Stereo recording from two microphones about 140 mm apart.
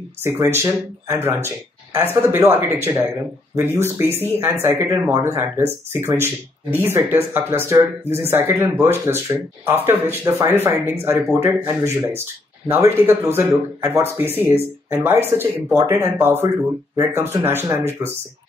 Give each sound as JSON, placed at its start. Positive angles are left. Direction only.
{"t": 0.2, "sound": "a man's voice", "side_deg": -20}